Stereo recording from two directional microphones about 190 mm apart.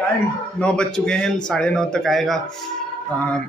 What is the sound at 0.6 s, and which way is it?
A man's voice, 5° left (ahead or behind).